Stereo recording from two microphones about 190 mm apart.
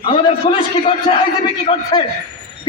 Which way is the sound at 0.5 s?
30° left (ahead or behind).